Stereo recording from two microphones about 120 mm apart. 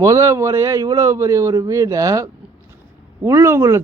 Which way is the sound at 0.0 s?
25° right (ahead or behind).